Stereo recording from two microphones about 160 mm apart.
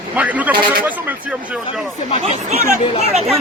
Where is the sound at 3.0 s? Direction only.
40° right (ahead or behind).